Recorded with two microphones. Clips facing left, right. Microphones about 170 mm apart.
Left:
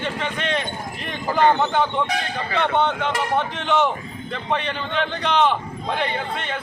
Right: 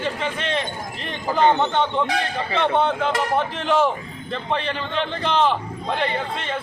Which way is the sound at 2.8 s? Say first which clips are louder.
Right 1 dB; 5° right (ahead or behind).